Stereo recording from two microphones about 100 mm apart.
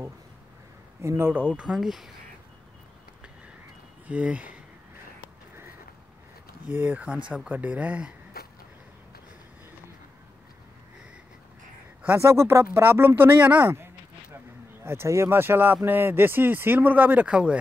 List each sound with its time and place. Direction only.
1.0 s speech: 25° right (ahead or behind)
1.6 s speech: 5° right (ahead or behind)
4.1 s speech: 15° right (ahead or behind)
6.7 s speech: 15° right (ahead or behind)
12.0 s speech: 25° right (ahead or behind)